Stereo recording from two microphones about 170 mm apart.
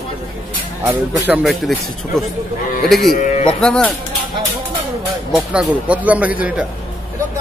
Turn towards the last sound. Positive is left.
turn(degrees=-10)  # may be behind; listen again after turning